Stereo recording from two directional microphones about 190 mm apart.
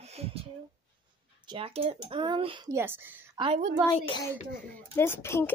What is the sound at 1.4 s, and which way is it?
Speech, 25° right (ahead or behind).